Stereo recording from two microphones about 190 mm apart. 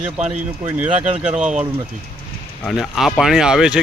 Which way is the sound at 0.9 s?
30° right (ahead or behind).